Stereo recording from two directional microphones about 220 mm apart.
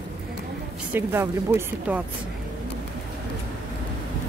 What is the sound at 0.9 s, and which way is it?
Speech, 10° right (ahead or behind).